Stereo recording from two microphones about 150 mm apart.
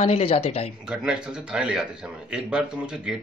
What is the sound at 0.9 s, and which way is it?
A man's voice, 5° right (ahead or behind).